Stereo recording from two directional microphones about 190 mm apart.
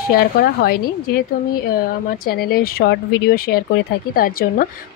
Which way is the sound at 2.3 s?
55° left (ahead or behind).